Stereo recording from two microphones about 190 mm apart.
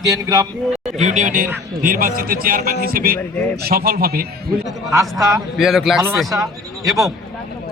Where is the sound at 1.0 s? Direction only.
40° right (ahead or behind).